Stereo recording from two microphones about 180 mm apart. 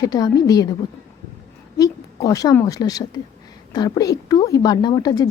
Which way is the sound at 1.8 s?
20° left (ahead or behind).